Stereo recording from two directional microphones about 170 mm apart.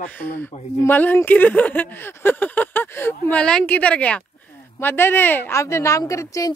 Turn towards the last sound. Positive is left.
turn(degrees=20)  # may be behind; listen again after turning